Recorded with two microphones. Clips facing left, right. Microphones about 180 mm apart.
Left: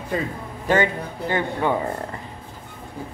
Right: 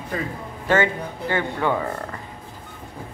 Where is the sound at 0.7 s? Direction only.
15° left (ahead or behind).